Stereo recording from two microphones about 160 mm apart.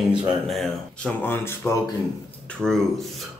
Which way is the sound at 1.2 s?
15° left (ahead or behind).